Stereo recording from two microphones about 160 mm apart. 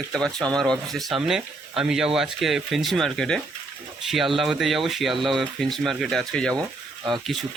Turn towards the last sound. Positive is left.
turn(degrees=0)  # may be behind; listen again after turning